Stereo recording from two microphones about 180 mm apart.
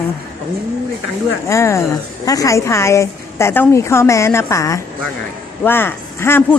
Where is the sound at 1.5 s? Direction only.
15° left (ahead or behind).